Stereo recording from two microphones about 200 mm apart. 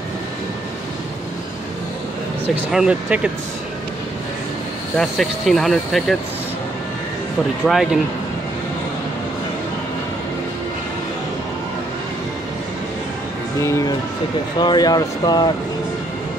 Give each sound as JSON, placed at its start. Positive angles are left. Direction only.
{"t": 2.5, "sound": "speech", "side_deg": -5}
{"t": 4.9, "sound": "speech", "side_deg": 0}
{"t": 7.6, "sound": "speech", "side_deg": 0}
{"t": 13.6, "sound": "speech", "side_deg": 15}